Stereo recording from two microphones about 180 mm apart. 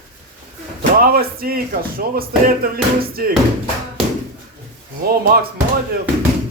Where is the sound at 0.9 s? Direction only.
55° right (ahead or behind).